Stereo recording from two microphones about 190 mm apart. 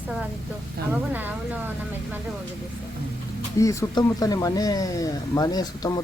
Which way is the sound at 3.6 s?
15° left (ahead or behind).